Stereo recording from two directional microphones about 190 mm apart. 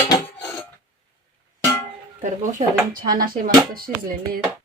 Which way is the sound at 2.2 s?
40° right (ahead or behind).